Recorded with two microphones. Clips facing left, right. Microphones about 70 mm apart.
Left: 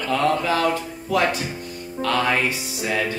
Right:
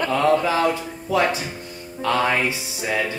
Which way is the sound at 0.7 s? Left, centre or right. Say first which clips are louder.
Even; centre.